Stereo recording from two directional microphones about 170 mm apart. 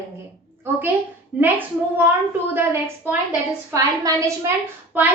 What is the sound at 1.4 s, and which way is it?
A woman's voice, 10° right (ahead or behind).